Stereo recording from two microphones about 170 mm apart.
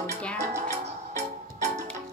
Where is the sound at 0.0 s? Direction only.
5° left (ahead or behind).